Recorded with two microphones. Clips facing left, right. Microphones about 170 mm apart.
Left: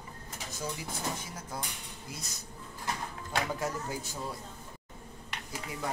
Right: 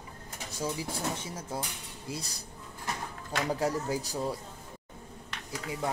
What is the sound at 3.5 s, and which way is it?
Speech, 35° right (ahead or behind).